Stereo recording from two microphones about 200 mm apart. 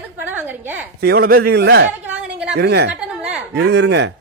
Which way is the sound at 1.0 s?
50° right (ahead or behind).